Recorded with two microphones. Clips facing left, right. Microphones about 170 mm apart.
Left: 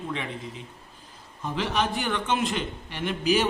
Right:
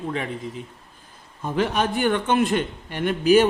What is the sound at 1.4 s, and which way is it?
A man's voice, 50° right (ahead or behind).